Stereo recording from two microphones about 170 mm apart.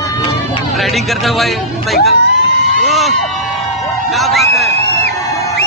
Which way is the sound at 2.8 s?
Centre (ahead or behind).